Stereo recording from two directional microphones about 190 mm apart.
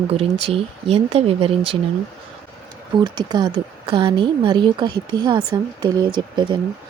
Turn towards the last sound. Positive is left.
turn(degrees=-25)  # may be behind; listen again after turning